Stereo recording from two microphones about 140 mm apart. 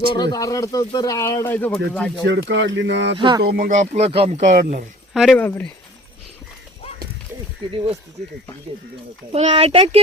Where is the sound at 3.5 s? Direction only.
75° right (ahead or behind); by 4.5 s 50° right (ahead or behind).